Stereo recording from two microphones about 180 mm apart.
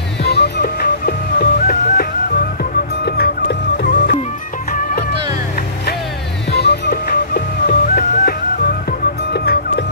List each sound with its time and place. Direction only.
0.2 s music: 70° left (ahead or behind)
3.1 s music: 65° left (ahead or behind)
6.5 s music: 65° left (ahead or behind)